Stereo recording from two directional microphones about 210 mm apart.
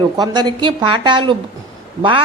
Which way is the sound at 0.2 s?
20° right (ahead or behind).